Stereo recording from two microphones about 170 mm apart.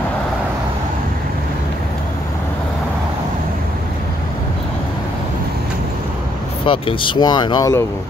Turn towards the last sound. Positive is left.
turn(degrees=20)  # may be behind; listen again after turning